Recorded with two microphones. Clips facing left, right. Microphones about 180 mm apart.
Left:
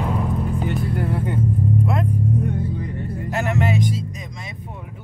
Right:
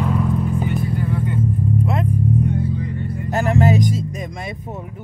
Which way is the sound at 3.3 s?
35° right (ahead or behind).